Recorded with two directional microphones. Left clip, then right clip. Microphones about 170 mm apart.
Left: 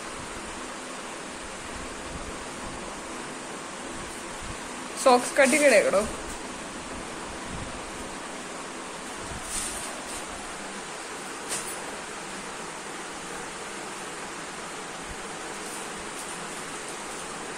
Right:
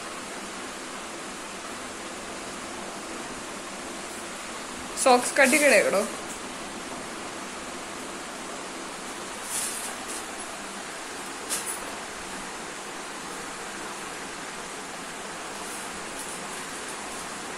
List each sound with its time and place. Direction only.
5.0 s speech: centre (ahead or behind)